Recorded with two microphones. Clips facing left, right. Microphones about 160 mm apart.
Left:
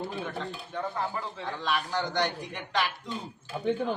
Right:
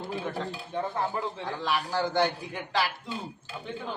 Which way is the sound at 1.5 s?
10° right (ahead or behind).